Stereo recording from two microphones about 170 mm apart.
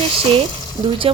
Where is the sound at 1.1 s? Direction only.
35° right (ahead or behind).